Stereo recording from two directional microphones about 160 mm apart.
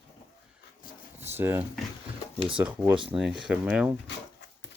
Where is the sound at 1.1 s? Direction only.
15° right (ahead or behind).